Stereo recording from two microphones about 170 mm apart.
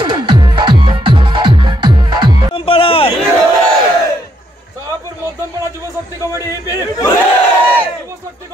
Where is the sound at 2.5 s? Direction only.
30° left (ahead or behind).